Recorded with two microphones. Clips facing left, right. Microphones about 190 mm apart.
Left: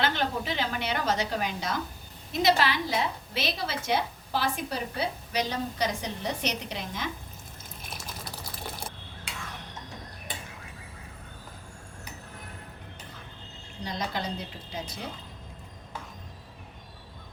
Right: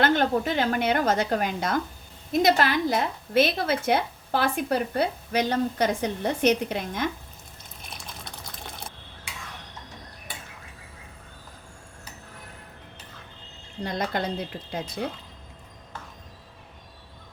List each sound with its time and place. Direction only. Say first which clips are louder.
0.0 s a woman's voice: right 7 dB; 50° right (ahead or behind)
7.8 s water: left 1 dB; centre (ahead or behind)
13.8 s a woman's voice: right 5 dB; 55° right (ahead or behind)